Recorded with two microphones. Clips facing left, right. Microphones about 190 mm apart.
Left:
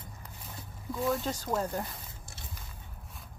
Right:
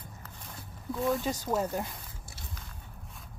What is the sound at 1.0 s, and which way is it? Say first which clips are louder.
Speech: right 1 dB; 5° right (ahead or behind).